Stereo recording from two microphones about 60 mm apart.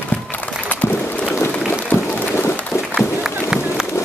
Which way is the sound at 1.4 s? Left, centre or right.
Left.